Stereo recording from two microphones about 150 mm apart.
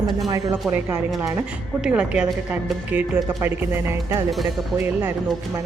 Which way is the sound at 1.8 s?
5° right (ahead or behind).